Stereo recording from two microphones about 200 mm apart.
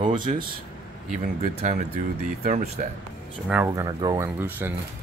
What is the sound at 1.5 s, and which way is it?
Speech, 35° right (ahead or behind).